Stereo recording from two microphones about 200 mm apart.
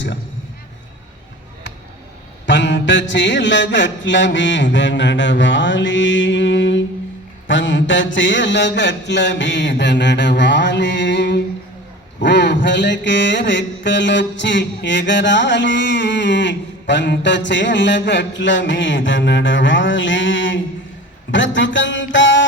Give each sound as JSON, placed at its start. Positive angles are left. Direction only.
{"t": 2.5, "sound": "mantra", "side_deg": 65}